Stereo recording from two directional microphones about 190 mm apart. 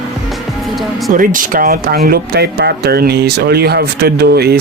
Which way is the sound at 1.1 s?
45° right (ahead or behind).